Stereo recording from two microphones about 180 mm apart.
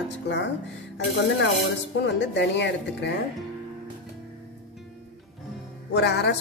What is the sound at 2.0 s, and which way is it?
A woman's voice, 75° left (ahead or behind).